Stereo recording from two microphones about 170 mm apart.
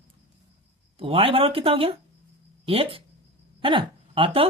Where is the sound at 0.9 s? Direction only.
35° right (ahead or behind).